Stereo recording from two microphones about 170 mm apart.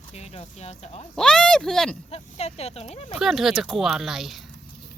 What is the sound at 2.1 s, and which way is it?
Speech, 35° left (ahead or behind).